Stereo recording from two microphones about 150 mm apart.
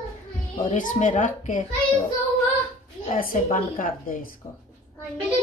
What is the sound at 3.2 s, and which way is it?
A woman's voice, 65° left (ahead or behind).